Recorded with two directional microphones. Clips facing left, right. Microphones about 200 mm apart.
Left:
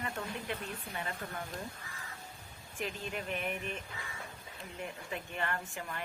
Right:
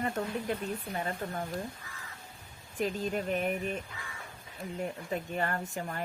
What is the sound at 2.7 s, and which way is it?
Speech, 40° right (ahead or behind).